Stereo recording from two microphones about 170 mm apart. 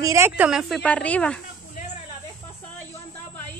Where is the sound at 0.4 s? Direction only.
5° right (ahead or behind).